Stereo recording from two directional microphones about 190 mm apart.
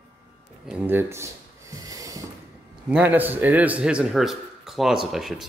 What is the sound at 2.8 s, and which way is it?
A man's voice, 10° right (ahead or behind).